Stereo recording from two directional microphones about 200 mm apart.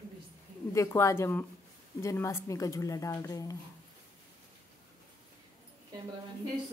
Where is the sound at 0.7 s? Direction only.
15° left (ahead or behind).